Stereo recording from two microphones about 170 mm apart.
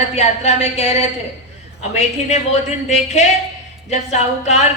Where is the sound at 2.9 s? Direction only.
40° left (ahead or behind).